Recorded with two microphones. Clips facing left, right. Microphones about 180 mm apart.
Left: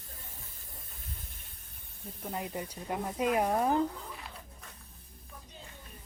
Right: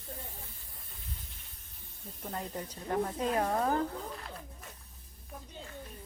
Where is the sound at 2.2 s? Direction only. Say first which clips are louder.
Left 2 dB; 10° left (ahead or behind).